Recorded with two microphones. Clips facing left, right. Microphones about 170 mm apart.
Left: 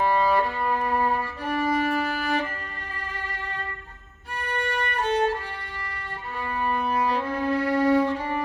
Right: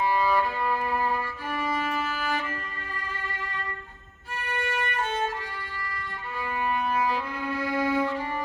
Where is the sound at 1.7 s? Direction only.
65° left (ahead or behind).